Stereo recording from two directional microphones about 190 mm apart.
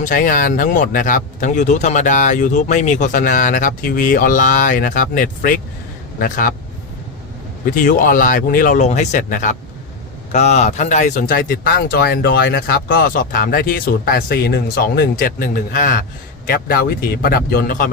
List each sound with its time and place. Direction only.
0.0 s speech: 45° left (ahead or behind)
7.6 s speech: 45° left (ahead or behind)